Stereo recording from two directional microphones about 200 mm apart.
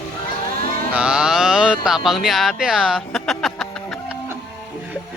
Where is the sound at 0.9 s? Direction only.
5° right (ahead or behind).